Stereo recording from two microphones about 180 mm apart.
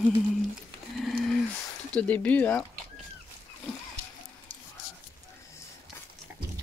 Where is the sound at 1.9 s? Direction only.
10° left (ahead or behind).